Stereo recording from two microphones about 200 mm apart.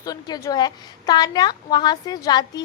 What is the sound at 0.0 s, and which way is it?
A woman's voice, 20° left (ahead or behind).